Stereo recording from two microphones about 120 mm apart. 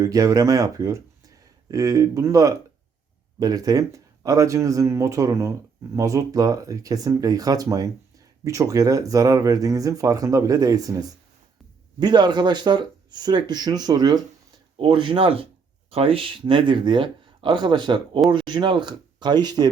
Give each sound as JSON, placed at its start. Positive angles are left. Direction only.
{"t": 0.0, "sound": "speech", "side_deg": -30}